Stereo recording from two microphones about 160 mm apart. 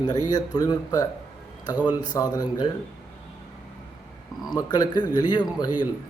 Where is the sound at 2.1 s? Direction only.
25° left (ahead or behind).